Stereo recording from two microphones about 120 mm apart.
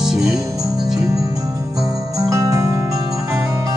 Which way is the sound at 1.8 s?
30° right (ahead or behind).